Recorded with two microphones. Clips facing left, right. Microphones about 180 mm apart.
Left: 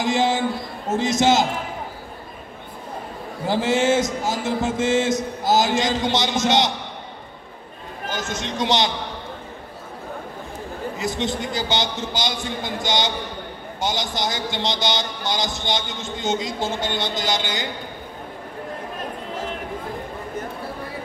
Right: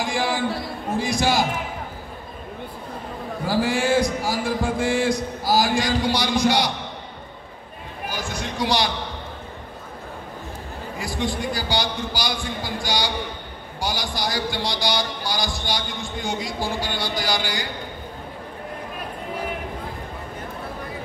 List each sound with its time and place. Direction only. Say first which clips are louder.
0.0 s speech: left 3 dB; 20° left (ahead or behind)
3.4 s speech: left 2 dB; 20° left (ahead or behind)
8.1 s speech: left 2 dB; 20° left (ahead or behind)
11.0 s speech: even; 20° left (ahead or behind)